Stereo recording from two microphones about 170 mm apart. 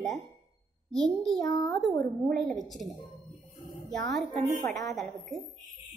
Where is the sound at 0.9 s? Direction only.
5° left (ahead or behind).